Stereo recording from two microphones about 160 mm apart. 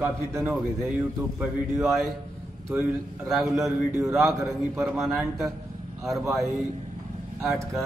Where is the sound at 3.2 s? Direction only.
Centre (ahead or behind).